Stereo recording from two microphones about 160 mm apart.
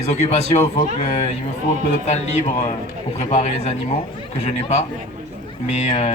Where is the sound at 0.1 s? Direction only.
45° left (ahead or behind).